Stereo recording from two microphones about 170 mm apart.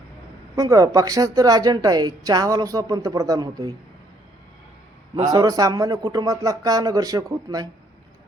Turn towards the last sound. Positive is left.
turn(degrees=-20)  # may be behind; listen again after turning